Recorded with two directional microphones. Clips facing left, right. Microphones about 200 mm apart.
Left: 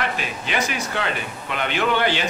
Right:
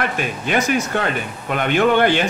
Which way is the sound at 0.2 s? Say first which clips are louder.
Right 5 dB; 50° right (ahead or behind).